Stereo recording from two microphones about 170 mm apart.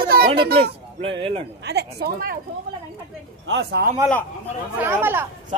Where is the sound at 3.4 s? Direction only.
80° right.